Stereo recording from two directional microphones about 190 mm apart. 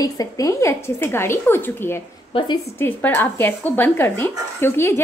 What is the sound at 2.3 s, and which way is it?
Speech, 25° left (ahead or behind).